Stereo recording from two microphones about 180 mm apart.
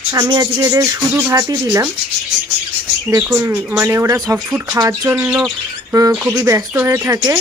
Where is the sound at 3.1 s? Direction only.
15° right (ahead or behind).